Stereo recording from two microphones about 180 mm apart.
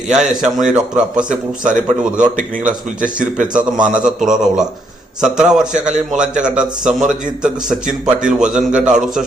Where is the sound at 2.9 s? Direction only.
45° right (ahead or behind).